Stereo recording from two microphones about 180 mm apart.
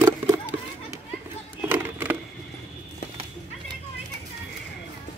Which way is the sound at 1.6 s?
10° right (ahead or behind).